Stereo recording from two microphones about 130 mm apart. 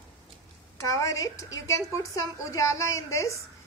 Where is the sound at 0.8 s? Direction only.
25° left (ahead or behind).